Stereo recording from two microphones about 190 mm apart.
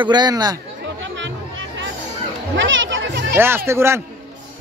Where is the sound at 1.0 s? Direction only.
75° right (ahead or behind).